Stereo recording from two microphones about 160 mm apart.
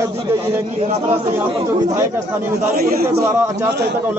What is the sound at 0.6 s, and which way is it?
Speech, 45° right (ahead or behind).